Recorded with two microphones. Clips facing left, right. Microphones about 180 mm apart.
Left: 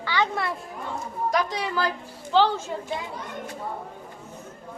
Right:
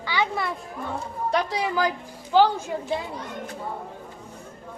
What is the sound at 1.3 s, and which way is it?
Speech, 30° right (ahead or behind).